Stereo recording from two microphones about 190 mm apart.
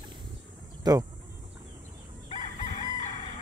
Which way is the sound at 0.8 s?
20° right (ahead or behind).